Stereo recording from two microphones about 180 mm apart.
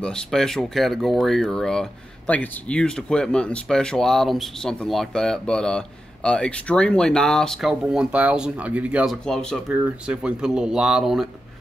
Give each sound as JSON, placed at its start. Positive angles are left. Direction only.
{"t": 0.0, "sound": "speech", "side_deg": 5}